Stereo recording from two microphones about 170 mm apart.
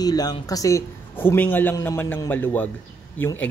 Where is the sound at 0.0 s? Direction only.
25° left (ahead or behind).